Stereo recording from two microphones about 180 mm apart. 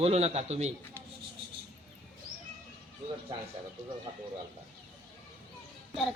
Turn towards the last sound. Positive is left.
turn(degrees=0)  # may be behind; listen again after turning